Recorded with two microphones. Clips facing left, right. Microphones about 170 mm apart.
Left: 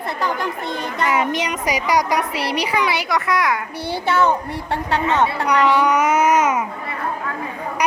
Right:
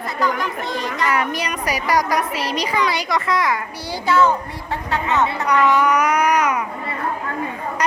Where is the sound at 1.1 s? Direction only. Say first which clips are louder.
Left 3 dB; 20° left (ahead or behind); by 3.5 s centre (ahead or behind).